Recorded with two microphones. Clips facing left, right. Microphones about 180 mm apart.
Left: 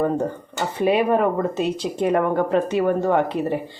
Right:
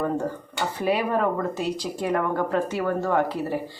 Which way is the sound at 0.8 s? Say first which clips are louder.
Left 6 dB; 20° left (ahead or behind).